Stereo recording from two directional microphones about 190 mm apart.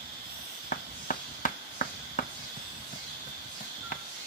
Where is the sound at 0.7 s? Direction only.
45° left (ahead or behind).